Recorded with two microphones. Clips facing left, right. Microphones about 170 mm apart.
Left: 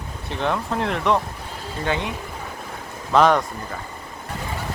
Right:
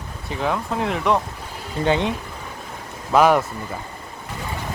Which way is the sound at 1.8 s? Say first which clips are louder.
Right 5 dB; 20° right (ahead or behind).